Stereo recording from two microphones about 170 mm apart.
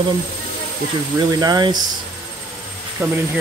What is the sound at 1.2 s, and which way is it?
Speech, 25° right (ahead or behind).